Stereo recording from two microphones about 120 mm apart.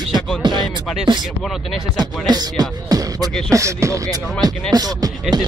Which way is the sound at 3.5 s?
25° right (ahead or behind).